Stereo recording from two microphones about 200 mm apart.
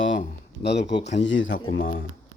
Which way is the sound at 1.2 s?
65° left (ahead or behind).